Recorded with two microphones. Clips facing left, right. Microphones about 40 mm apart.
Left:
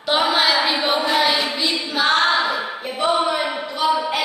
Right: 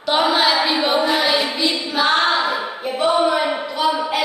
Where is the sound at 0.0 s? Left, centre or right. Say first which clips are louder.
Right 1 dB; centre.